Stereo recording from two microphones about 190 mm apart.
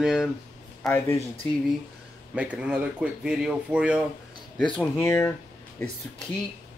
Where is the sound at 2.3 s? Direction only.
5° right (ahead or behind).